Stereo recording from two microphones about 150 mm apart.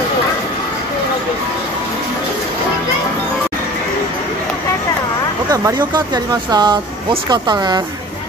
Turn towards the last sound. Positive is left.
turn(degrees=-30)  # may be behind; listen again after turning